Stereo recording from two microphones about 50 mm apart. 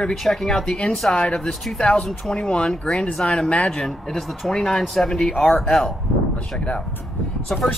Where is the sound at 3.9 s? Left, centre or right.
Centre.